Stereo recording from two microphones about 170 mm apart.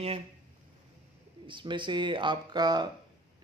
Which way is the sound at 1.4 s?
30° right (ahead or behind).